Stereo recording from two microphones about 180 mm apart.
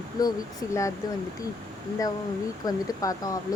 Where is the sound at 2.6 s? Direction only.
20° left (ahead or behind).